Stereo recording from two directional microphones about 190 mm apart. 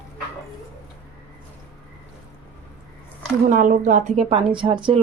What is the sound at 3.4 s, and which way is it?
Speech, 45° right (ahead or behind).